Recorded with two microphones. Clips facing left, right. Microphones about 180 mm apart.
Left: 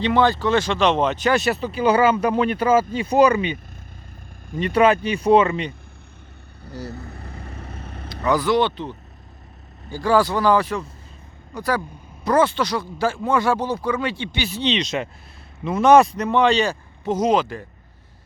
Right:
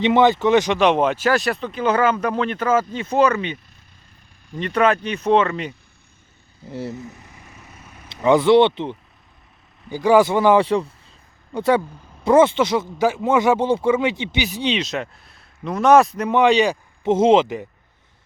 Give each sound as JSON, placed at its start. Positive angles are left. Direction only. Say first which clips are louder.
{"t": 0.0, "sound": "speech", "louder": "right 3 dB", "side_deg": -20}
{"t": 6.7, "sound": "speech", "louder": "right 4 dB", "side_deg": -25}
{"t": 6.9, "sound": "vehicle", "louder": "right 1 dB", "side_deg": 60}
{"t": 8.1, "sound": "speech", "louder": "right 6 dB", "side_deg": -25}